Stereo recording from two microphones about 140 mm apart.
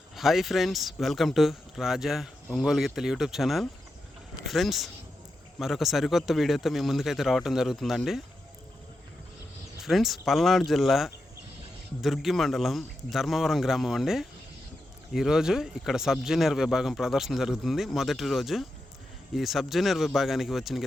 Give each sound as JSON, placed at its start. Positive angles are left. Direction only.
{"t": 0.2, "sound": "speech", "side_deg": 0}
{"t": 9.8, "sound": "speech", "side_deg": 0}